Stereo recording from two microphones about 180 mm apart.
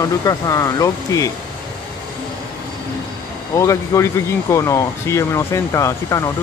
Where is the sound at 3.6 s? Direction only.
15° left (ahead or behind).